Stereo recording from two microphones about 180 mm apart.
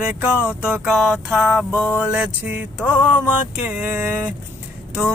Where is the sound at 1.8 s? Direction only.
5° right (ahead or behind).